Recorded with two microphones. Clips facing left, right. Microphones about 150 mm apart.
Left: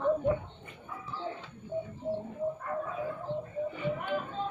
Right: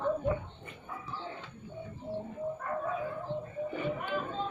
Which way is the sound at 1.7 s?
30° left (ahead or behind).